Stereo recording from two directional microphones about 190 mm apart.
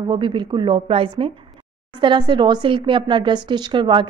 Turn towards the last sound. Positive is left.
turn(degrees=-25)  # may be behind; listen again after turning